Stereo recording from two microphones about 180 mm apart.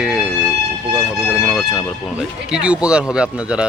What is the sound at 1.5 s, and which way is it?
Speech, 5° right (ahead or behind).